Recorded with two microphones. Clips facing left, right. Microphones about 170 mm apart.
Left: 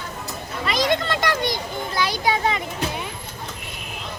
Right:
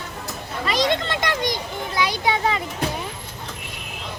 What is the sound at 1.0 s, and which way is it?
Children playing, 20° right (ahead or behind).